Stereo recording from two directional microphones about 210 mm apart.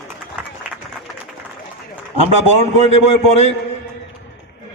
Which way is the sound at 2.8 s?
30° left (ahead or behind).